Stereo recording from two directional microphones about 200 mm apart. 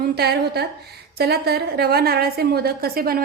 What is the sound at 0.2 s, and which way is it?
A woman's voice, 55° right (ahead or behind).